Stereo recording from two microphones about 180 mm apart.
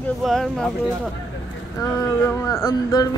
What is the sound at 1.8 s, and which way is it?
Speech, 15° left (ahead or behind).